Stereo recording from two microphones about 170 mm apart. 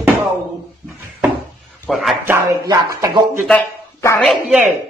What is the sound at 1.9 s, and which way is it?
Speech, centre (ahead or behind).